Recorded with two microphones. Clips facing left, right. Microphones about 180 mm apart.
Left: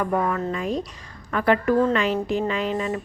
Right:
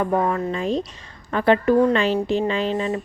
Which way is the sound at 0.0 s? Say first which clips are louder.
Right 2 dB; 25° right (ahead or behind).